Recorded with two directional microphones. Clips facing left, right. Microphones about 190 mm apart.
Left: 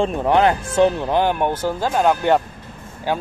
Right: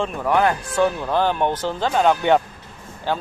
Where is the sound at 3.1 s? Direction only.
10° left (ahead or behind).